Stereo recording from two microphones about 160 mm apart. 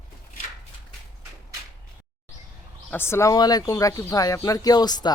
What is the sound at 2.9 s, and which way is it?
Speech, 15° left (ahead or behind).